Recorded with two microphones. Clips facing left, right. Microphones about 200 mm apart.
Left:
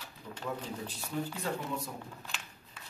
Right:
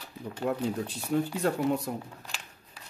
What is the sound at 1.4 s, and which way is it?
Speech, 70° right (ahead or behind).